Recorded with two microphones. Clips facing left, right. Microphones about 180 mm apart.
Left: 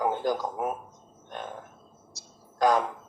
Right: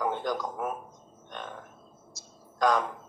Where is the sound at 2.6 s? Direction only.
5° left (ahead or behind).